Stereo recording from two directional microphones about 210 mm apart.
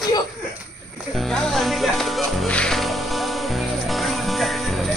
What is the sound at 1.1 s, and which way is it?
Music, centre (ahead or behind).